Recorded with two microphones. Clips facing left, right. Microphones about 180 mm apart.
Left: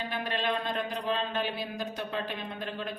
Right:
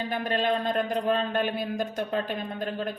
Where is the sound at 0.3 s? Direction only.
45° right (ahead or behind).